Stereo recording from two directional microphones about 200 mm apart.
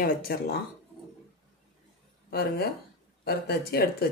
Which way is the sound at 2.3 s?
50° left (ahead or behind).